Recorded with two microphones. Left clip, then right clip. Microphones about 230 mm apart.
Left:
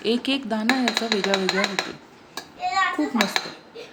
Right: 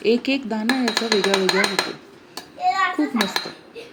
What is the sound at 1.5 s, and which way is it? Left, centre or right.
Speech, centre.